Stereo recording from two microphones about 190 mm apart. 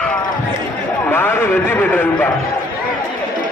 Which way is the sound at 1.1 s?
10° left (ahead or behind).